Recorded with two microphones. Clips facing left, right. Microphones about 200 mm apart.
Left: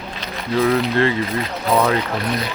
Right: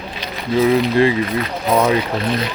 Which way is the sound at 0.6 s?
15° right (ahead or behind).